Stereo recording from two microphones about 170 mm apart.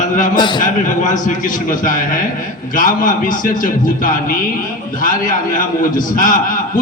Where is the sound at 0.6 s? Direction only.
50° left (ahead or behind).